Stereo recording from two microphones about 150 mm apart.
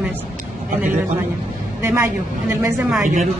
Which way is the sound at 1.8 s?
15° right (ahead or behind).